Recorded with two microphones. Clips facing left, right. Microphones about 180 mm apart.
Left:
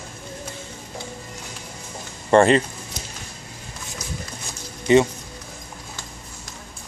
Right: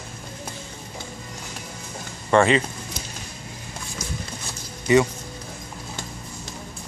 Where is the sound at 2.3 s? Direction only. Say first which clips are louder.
Left 3 dB; 40° left (ahead or behind).